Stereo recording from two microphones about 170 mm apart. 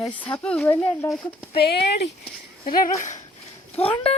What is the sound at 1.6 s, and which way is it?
Speech, 80° left.